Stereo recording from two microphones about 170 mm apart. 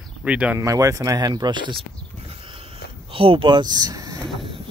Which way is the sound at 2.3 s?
35° right (ahead or behind).